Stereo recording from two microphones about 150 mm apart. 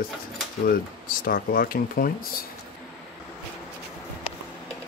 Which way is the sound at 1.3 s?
70° left (ahead or behind).